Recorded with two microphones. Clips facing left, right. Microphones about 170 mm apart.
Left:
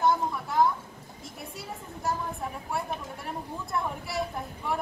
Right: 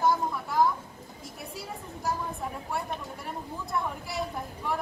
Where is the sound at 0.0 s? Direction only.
Centre (ahead or behind).